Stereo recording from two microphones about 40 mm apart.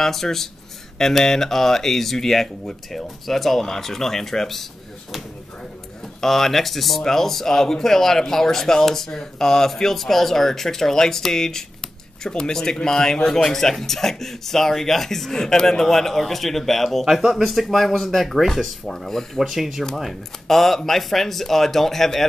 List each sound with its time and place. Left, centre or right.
0.0 s speech: centre
6.2 s speech: centre
17.0 s speech: centre
19.4 s speech: centre